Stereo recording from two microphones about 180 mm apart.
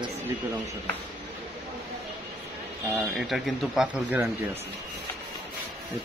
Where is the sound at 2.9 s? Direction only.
Centre (ahead or behind).